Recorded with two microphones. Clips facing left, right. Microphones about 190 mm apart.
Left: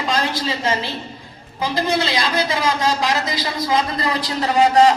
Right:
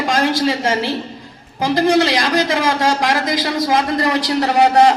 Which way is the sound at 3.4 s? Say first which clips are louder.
Right 2 dB; 80° right.